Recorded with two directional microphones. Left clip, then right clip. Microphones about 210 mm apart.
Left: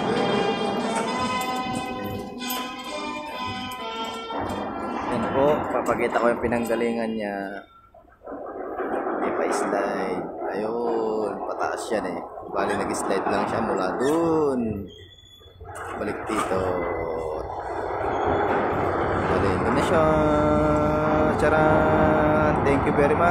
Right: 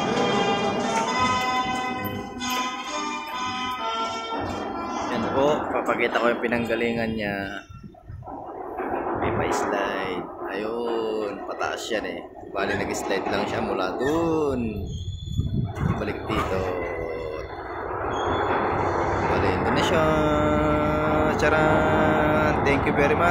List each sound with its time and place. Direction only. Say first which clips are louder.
0.1 s music: even; 30° right (ahead or behind)
3.8 s music: right 4 dB; 30° right (ahead or behind)
5.1 s a sound: left 1 dB; 10° left (ahead or behind)
5.8 s speech: even; 5° left (ahead or behind)
8.7 s vehicle: even; 50° left (ahead or behind)
9.4 s speech: left 1 dB; 5° left (ahead or behind)
16.1 s speech: left 2 dB; 10° left (ahead or behind)
17.9 s a sound: left 1 dB; 55° left (ahead or behind)
19.8 s speech: left 2 dB; 10° left (ahead or behind)